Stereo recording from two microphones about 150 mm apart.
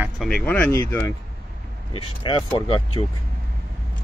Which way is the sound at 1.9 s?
35° left (ahead or behind).